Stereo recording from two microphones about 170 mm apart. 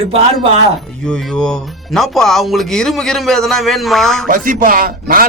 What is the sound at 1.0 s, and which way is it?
Speech, 5° left (ahead or behind).